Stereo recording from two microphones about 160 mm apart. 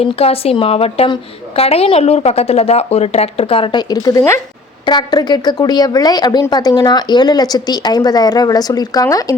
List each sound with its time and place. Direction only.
0.0 s a woman's voice: 40° left (ahead or behind); by 9.3 s 20° left (ahead or behind)